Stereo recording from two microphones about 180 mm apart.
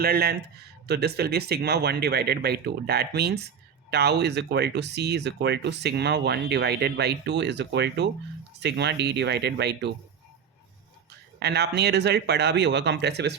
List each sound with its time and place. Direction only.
0.0 s speech: 60° right (ahead or behind)
11.3 s speech: 65° right (ahead or behind)